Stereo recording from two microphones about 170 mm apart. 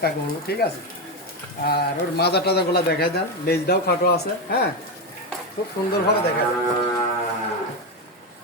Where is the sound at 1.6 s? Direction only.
70° left (ahead or behind).